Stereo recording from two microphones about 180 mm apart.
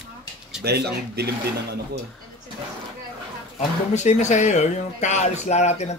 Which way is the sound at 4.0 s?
40° left (ahead or behind).